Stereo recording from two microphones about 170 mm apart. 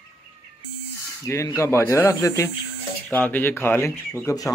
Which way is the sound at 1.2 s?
15° left (ahead or behind).